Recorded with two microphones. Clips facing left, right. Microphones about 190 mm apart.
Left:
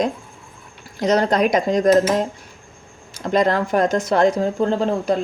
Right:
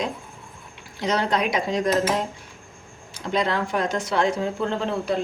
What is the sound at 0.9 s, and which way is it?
Speech, 45° left (ahead or behind).